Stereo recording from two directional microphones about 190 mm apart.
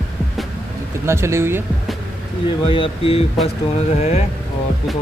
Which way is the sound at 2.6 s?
30° left (ahead or behind).